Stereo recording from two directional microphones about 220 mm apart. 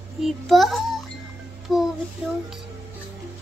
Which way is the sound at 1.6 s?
Centre (ahead or behind).